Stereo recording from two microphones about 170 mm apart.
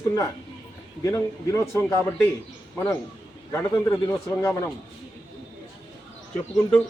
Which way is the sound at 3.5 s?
15° left (ahead or behind).